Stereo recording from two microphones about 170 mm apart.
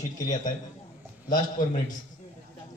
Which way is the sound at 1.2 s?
55° left (ahead or behind).